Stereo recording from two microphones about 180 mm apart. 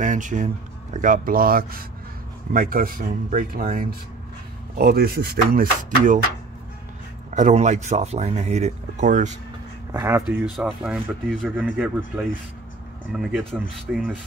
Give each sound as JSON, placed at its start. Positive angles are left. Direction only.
{"t": 0.0, "sound": "speech", "side_deg": -45}
{"t": 7.3, "sound": "speech", "side_deg": -40}
{"t": 9.9, "sound": "speech", "side_deg": -15}
{"t": 10.2, "sound": "speech", "side_deg": -5}
{"t": 13.1, "sound": "speech", "side_deg": 0}